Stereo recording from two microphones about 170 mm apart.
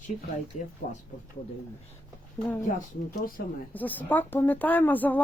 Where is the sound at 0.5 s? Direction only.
45° left (ahead or behind).